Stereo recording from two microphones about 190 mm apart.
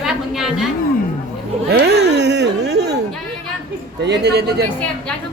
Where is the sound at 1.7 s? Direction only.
60° right (ahead or behind).